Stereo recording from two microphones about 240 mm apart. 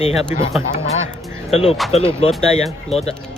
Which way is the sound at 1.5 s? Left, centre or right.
Left.